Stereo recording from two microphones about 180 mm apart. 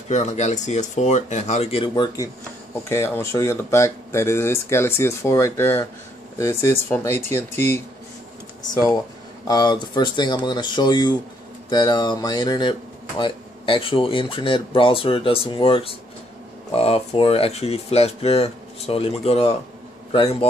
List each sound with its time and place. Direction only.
0.1 s speech: 40° left (ahead or behind)
2.9 s speech: 15° left (ahead or behind)
8.7 s a man's voice: 20° left (ahead or behind)